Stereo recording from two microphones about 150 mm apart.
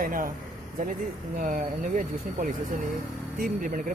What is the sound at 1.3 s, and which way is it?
Speech, 65° right (ahead or behind).